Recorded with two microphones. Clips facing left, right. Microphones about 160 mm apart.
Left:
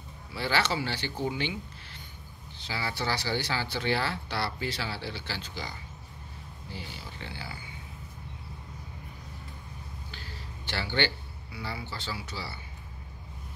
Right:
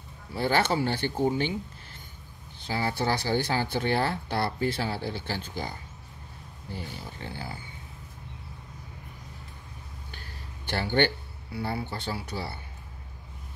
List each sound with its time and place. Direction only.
0.3 s speech: 50° right (ahead or behind)
2.6 s speech: 50° right (ahead or behind)
10.7 s speech: 50° right (ahead or behind)